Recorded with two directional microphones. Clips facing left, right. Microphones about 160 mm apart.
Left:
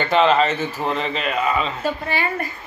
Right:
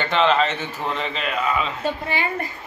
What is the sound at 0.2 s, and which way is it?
A man's voice, 5° left (ahead or behind).